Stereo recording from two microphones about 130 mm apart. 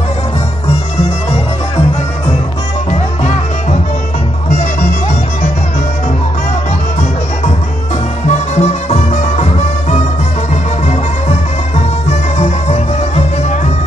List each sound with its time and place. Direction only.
8.3 s music: 60° left (ahead or behind)